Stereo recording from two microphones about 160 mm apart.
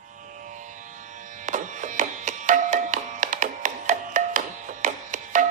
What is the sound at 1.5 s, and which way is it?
Music, 50° right (ahead or behind).